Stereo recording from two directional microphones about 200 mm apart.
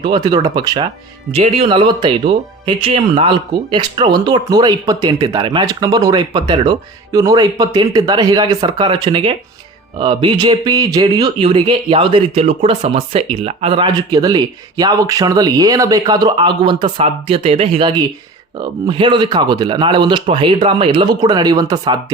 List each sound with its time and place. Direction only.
0.0 s speech: 25° right (ahead or behind)